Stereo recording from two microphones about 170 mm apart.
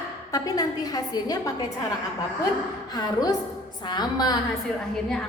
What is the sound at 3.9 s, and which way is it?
Speech, 25° left (ahead or behind).